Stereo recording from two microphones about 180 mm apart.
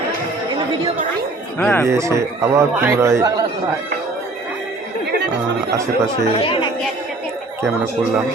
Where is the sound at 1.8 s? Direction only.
15° right (ahead or behind).